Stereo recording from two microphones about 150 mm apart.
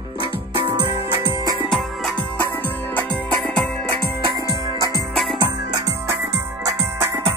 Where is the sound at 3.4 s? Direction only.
5° left (ahead or behind).